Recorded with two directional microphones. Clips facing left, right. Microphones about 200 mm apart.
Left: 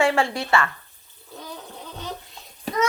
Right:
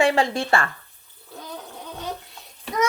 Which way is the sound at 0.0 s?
20° right (ahead or behind).